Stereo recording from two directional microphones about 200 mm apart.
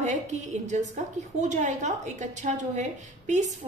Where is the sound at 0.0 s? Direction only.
35° right (ahead or behind).